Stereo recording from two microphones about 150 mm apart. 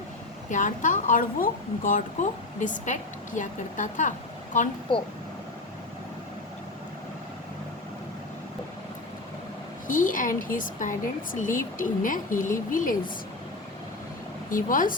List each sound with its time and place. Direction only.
0.5 s a woman's voice: 55° left (ahead or behind)
9.8 s a woman's voice: 60° left (ahead or behind)
14.5 s a woman's voice: 65° left (ahead or behind)